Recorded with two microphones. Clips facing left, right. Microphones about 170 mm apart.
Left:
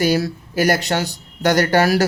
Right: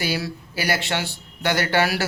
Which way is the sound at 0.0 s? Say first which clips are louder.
Left 8 dB; 45° left (ahead or behind).